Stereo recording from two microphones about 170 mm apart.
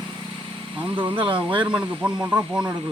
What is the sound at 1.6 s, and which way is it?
Speech, 5° right (ahead or behind).